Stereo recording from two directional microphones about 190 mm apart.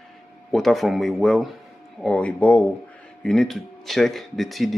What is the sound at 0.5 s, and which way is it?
Speech, centre (ahead or behind).